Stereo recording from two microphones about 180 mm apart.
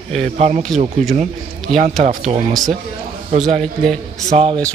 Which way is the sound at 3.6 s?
5° left (ahead or behind).